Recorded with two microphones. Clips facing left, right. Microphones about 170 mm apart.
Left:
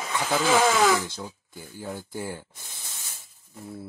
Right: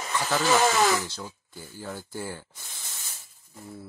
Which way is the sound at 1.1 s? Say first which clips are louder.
Left 2 dB; 15° left (ahead or behind).